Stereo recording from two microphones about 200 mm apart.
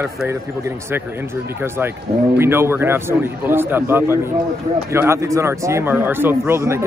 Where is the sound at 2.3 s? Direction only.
10° right (ahead or behind).